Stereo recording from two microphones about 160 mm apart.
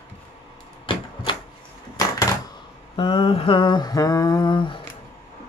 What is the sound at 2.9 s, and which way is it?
Speech, 30° left (ahead or behind).